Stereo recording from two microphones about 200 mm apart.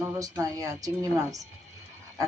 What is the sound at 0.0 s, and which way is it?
A woman's voice, 15° right (ahead or behind).